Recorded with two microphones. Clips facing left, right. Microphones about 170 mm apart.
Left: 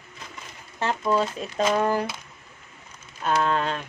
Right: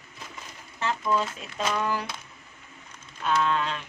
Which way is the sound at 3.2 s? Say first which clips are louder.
Left 2 dB; 45° left (ahead or behind).